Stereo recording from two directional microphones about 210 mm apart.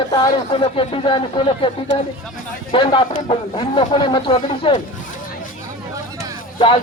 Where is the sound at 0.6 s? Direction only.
25° left (ahead or behind).